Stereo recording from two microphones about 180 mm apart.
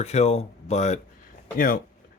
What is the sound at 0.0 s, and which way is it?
Speech, 40° left (ahead or behind).